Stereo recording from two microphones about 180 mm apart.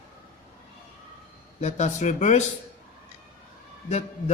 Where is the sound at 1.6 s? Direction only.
40° left (ahead or behind).